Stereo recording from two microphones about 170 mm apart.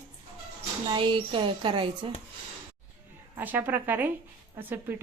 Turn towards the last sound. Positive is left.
turn(degrees=-10)  # may be behind; listen again after turning